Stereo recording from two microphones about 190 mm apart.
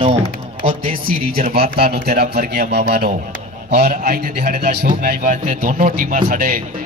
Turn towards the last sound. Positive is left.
turn(degrees=-50)  # may be behind; listen again after turning